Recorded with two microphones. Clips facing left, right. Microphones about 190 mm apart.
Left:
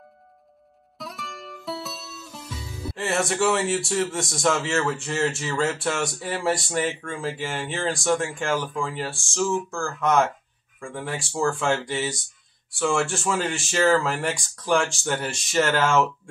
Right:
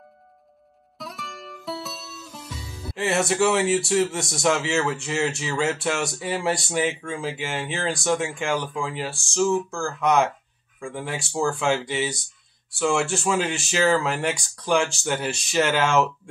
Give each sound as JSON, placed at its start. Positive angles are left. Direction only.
{"t": 0.9, "sound": "music", "side_deg": 0}
{"t": 3.0, "sound": "speech", "side_deg": 0}
{"t": 9.8, "sound": "speech", "side_deg": -15}
{"t": 10.8, "sound": "speech", "side_deg": 0}